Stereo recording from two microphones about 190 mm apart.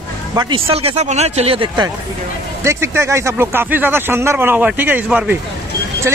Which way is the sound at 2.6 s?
15° right (ahead or behind).